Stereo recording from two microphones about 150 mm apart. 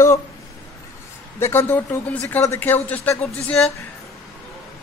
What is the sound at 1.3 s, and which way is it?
A woman's voice, 15° left (ahead or behind).